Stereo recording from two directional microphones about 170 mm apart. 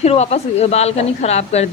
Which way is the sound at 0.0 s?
40° left (ahead or behind).